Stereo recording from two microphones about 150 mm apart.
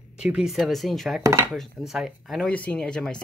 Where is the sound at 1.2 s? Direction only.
20° right (ahead or behind).